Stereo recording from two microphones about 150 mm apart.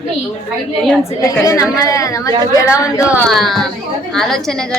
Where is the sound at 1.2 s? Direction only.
20° left (ahead or behind).